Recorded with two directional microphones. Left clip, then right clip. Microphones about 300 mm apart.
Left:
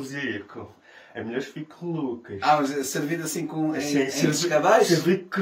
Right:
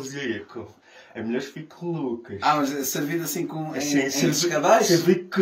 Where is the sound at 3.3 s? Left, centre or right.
Centre.